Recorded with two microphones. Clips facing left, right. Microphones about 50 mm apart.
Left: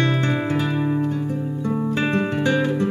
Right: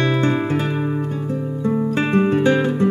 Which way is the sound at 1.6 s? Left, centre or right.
Right.